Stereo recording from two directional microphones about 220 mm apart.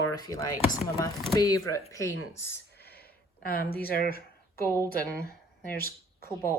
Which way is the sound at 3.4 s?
40° left (ahead or behind).